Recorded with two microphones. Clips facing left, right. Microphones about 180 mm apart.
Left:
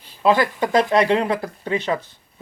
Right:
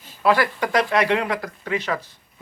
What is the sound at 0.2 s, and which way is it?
Speech, 20° left (ahead or behind).